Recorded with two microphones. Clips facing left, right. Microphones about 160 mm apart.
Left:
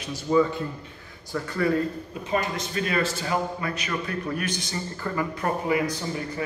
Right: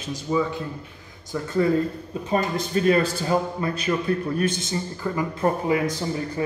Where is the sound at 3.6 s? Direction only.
30° right (ahead or behind).